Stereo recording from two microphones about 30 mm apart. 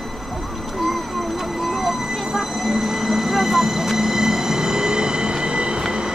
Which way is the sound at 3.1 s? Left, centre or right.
Centre.